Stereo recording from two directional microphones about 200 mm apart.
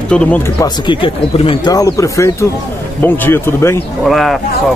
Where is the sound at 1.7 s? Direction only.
15° left (ahead or behind).